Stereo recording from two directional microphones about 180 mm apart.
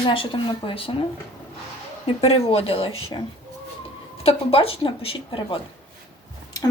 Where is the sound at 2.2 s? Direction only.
35° left (ahead or behind).